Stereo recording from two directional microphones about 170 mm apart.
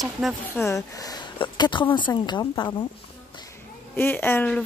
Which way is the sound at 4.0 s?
10° left (ahead or behind).